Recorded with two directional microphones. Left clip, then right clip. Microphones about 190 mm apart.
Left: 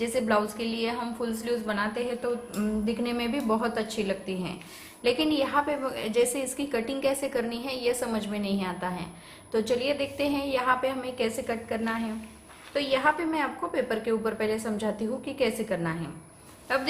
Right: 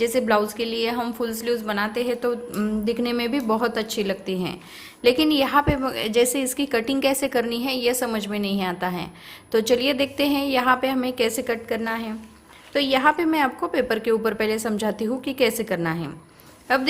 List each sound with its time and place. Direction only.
0.0 s a woman's voice: 50° right (ahead or behind)